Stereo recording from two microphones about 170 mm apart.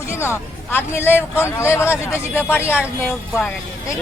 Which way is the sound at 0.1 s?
15° left (ahead or behind).